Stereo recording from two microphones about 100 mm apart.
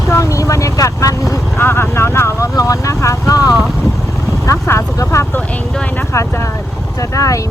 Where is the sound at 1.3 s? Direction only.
25° left (ahead or behind).